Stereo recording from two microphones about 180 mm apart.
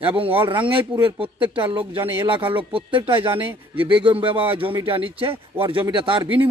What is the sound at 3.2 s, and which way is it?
Speech, 10° right (ahead or behind).